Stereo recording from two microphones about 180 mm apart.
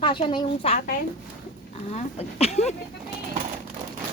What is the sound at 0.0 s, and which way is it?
Speech, 25° left (ahead or behind).